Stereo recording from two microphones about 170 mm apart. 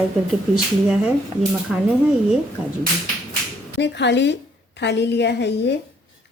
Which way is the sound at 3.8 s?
90° left.